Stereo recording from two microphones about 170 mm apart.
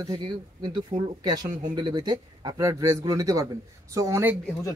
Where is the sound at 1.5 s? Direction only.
45° right (ahead or behind).